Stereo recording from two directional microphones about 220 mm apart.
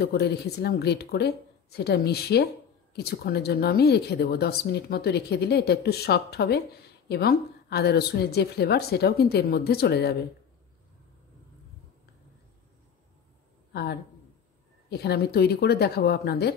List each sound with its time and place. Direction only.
0.0 s speech: 50° left (ahead or behind)
14.9 s speech: 45° left (ahead or behind)